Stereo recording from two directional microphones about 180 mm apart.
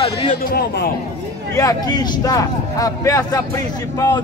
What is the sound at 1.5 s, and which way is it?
Speech, 20° left (ahead or behind).